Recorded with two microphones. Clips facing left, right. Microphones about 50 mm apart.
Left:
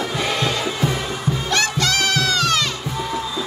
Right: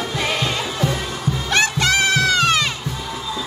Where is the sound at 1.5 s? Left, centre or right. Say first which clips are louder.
Right 3 dB; right.